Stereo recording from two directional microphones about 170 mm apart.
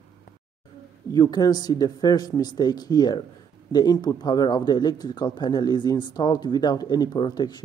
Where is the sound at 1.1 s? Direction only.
25° left (ahead or behind).